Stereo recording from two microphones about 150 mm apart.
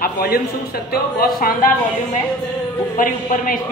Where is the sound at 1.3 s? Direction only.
75° left (ahead or behind).